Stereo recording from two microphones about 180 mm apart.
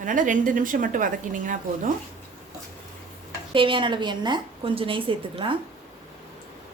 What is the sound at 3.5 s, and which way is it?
A woman's voice, 30° right (ahead or behind).